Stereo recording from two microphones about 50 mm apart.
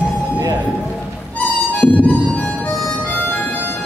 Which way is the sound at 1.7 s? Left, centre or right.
Left.